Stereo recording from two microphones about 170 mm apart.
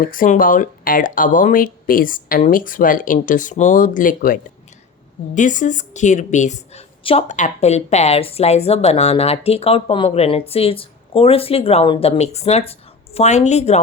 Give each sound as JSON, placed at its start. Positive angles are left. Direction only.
{"t": 0.0, "sound": "a woman's voice", "side_deg": 55}